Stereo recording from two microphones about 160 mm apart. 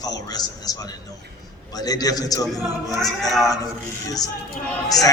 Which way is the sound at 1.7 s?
25° left (ahead or behind).